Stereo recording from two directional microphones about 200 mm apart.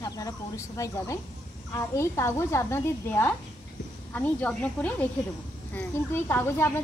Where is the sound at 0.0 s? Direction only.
15° left (ahead or behind).